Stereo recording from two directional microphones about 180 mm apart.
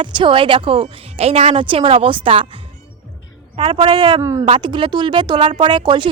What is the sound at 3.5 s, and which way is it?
Speech, 30° right (ahead or behind).